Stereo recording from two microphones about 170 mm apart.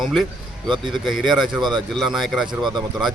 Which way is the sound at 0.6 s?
25° right (ahead or behind).